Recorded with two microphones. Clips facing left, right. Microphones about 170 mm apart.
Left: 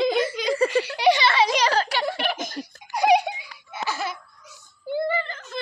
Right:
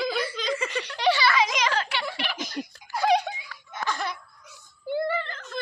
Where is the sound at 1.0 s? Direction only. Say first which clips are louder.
Left 2 dB; 20° left (ahead or behind); by 2.7 s 45° left (ahead or behind).